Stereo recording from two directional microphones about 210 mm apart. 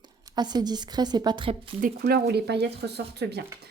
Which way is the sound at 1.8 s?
45° right (ahead or behind).